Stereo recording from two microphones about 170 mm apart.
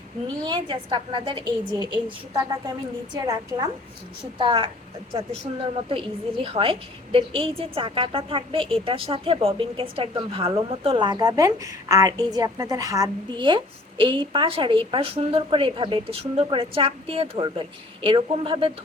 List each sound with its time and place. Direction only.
0.4 s a woman's voice: 25° right (ahead or behind)